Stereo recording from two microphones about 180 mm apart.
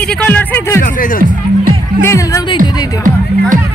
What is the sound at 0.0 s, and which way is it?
Speech, 10° left (ahead or behind).